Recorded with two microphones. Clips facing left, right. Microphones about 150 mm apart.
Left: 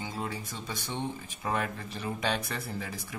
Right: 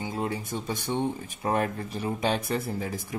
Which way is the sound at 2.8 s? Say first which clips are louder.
Right 6 dB; 50° right (ahead or behind).